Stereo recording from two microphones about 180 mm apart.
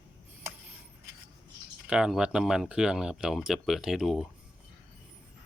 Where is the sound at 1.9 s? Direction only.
5° right (ahead or behind).